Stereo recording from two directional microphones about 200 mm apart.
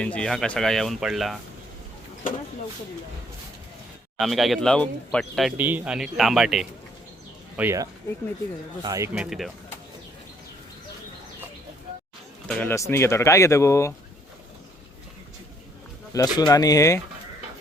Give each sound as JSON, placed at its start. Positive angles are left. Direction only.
{"t": 0.0, "sound": "speech", "side_deg": 5}
{"t": 4.2, "sound": "speech", "side_deg": 0}
{"t": 7.5, "sound": "speech", "side_deg": -10}
{"t": 9.1, "sound": "speech", "side_deg": -5}
{"t": 12.5, "sound": "speech", "side_deg": 10}
{"t": 16.1, "sound": "speech", "side_deg": 20}